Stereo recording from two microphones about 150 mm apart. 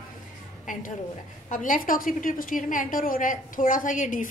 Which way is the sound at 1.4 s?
60° left (ahead or behind).